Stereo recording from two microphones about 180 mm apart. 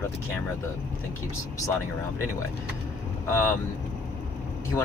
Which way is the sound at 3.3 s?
15° left (ahead or behind).